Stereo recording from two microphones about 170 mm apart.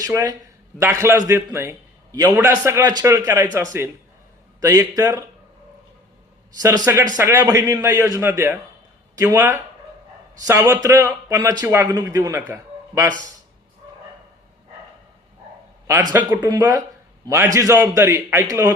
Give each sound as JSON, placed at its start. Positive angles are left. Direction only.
{"t": 0.0, "sound": "a man's voice", "side_deg": -20}
{"t": 6.6, "sound": "a man's voice", "side_deg": -20}
{"t": 16.1, "sound": "a man's voice", "side_deg": -10}
{"t": 16.5, "sound": "a man's voice", "side_deg": -20}